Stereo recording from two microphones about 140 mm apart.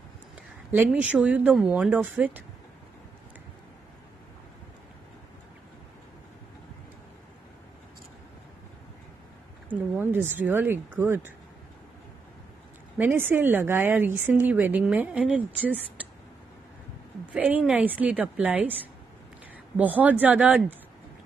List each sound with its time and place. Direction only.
0.7 s a woman's voice: 10° right (ahead or behind)
9.7 s a woman's voice: 15° right (ahead or behind)
12.9 s a woman's voice: 15° right (ahead or behind)
17.3 s a woman's voice: 10° right (ahead or behind)
19.8 s a woman's voice: 10° right (ahead or behind)